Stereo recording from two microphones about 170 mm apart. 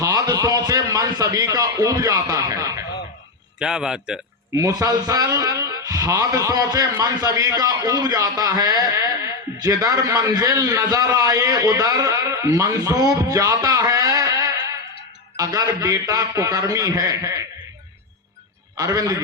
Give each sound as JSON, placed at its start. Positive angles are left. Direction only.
{"t": 0.0, "sound": "a man's voice", "side_deg": -20}
{"t": 3.6, "sound": "a man's voice", "side_deg": -5}
{"t": 4.5, "sound": "a man's voice", "side_deg": -20}
{"t": 13.5, "sound": "a sound", "side_deg": -20}
{"t": 15.4, "sound": "a man's voice", "side_deg": -20}
{"t": 18.8, "sound": "a man's voice", "side_deg": -20}